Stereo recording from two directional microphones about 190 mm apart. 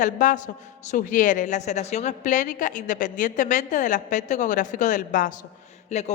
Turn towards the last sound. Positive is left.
turn(degrees=35)  # may be behind; listen again after turning